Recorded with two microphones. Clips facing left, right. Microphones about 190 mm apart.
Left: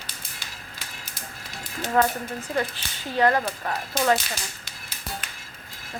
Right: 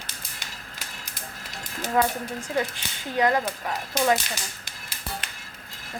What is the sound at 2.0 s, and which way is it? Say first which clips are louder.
Speech: left 2 dB; 15° right (ahead or behind).